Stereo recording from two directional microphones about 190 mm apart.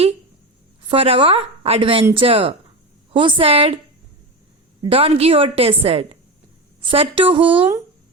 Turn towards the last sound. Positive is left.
turn(degrees=-30)  # may be behind; listen again after turning